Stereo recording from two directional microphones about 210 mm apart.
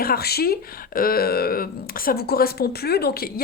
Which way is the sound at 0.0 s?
45° left (ahead or behind).